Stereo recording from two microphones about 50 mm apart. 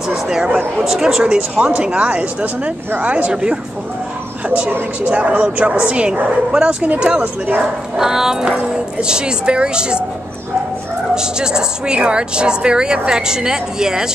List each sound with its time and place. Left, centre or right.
0.7 s a woman's voice: centre; by 3.5 s right
5.0 s a woman's voice: right
8.0 s a woman's voice: centre
11.1 s a woman's voice: centre